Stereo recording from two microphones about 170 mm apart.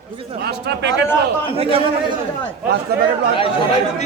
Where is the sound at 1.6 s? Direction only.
35° right (ahead or behind).